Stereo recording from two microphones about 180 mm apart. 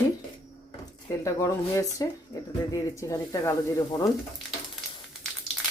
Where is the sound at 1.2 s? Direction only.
15° left (ahead or behind).